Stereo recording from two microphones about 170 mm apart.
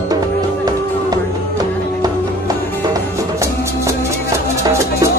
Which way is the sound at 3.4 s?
15° right (ahead or behind).